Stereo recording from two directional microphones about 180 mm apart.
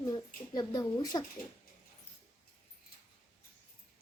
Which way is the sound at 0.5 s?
20° left (ahead or behind).